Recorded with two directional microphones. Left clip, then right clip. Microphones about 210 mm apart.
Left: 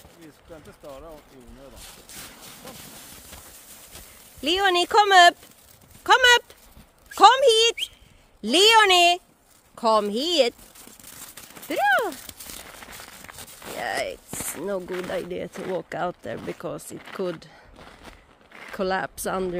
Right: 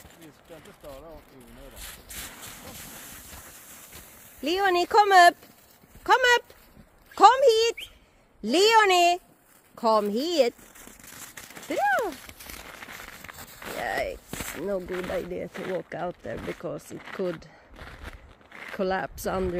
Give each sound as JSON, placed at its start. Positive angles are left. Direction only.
{"t": 0.8, "sound": "speech", "side_deg": 45}
{"t": 1.8, "sound": "speech", "side_deg": 0}
{"t": 4.4, "sound": "speech", "side_deg": 0}
{"t": 11.6, "sound": "speech", "side_deg": 5}
{"t": 12.8, "sound": "a sound", "side_deg": 5}
{"t": 13.7, "sound": "speech", "side_deg": 5}
{"t": 16.0, "sound": "speech", "side_deg": 20}
{"t": 16.3, "sound": "a sound", "side_deg": 5}